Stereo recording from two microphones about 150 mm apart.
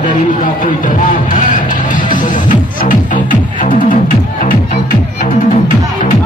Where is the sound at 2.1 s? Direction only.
60° left (ahead or behind).